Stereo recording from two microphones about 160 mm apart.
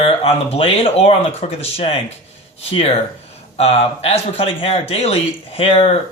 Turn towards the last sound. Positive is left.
turn(degrees=40)  # may be behind; listen again after turning